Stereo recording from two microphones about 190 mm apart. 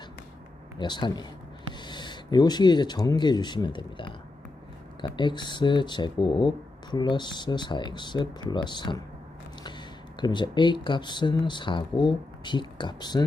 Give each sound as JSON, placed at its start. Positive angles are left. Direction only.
{"t": 0.8, "sound": "speech", "side_deg": 25}